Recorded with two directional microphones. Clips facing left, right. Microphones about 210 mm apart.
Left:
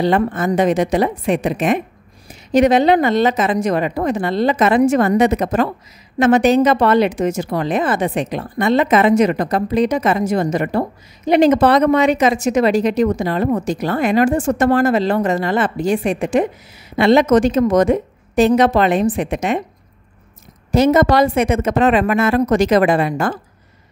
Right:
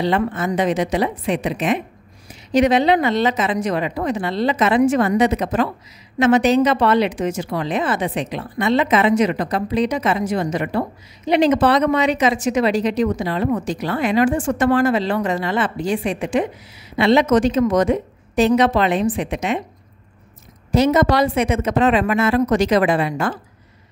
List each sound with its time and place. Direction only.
0.0 s a woman's voice: 50° left (ahead or behind)
20.7 s a woman's voice: 50° left (ahead or behind)